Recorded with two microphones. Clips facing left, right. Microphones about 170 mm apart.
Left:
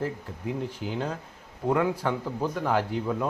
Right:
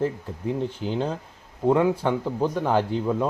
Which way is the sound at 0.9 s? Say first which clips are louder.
Right 4 dB; 25° right (ahead or behind).